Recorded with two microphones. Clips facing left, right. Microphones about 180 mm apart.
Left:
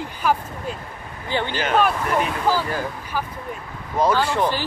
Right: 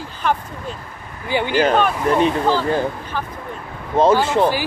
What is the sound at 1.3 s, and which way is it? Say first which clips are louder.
Speech: right 4 dB; 10° right (ahead or behind).